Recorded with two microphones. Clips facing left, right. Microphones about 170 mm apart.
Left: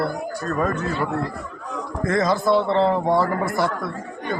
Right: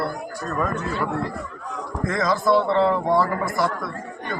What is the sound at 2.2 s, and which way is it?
A man's voice, 25° left (ahead or behind).